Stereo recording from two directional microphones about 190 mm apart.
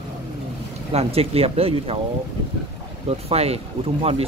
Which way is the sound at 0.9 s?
30° right (ahead or behind).